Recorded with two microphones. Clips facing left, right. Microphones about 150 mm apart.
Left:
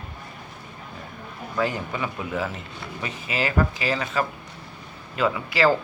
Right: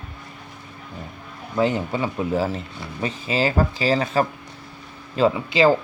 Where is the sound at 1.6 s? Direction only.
25° right (ahead or behind).